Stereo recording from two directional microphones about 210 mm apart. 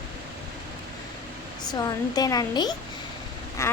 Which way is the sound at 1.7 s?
20° left (ahead or behind).